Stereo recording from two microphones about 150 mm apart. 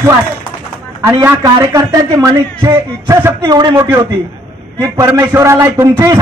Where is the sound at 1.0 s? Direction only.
15° right (ahead or behind).